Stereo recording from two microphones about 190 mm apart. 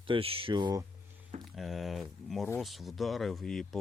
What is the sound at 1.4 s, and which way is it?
Speech, centre (ahead or behind).